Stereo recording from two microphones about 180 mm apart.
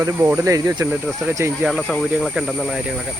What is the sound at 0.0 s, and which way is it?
Speech, 10° right (ahead or behind).